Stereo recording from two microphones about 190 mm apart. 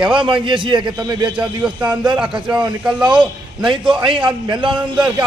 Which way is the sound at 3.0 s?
25° right (ahead or behind).